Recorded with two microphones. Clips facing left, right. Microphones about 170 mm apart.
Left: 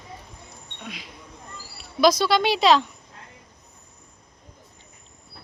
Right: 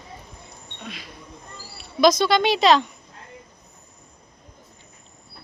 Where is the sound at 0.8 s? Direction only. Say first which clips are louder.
Right 1 dB; 15° left (ahead or behind).